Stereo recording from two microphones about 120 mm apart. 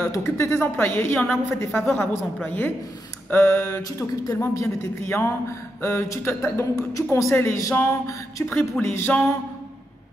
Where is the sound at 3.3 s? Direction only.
15° left (ahead or behind).